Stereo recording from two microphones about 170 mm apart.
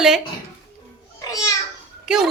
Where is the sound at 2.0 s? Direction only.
5° right (ahead or behind).